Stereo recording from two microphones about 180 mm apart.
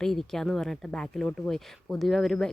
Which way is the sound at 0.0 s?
Centre (ahead or behind).